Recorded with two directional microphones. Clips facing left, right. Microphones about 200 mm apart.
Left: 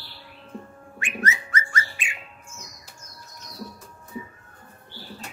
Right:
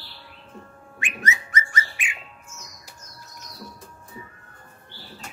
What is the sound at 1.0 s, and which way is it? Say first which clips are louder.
Bird: left 1 dB; 15° right (ahead or behind).